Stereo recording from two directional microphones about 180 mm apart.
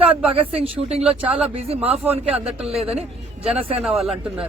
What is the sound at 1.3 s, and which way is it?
A man's voice, 35° right (ahead or behind).